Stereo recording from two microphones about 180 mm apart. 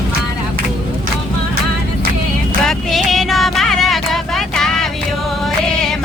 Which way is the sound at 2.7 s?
Centre (ahead or behind).